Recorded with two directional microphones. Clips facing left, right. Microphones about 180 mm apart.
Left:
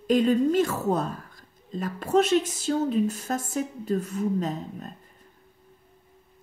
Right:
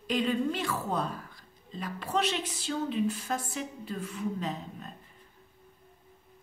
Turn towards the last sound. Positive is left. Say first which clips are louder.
# left 5 dB
turn(degrees=45)  # may be behind; listen again after turning